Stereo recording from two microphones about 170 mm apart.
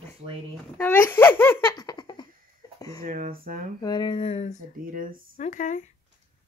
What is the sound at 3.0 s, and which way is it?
Speech, 50° right (ahead or behind).